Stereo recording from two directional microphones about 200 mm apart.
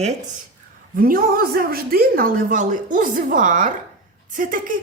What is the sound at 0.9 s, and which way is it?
A woman's voice, 45° right (ahead or behind).